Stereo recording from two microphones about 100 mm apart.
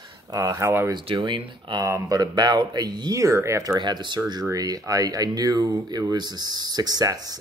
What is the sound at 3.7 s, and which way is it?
Speech, 50° right (ahead or behind).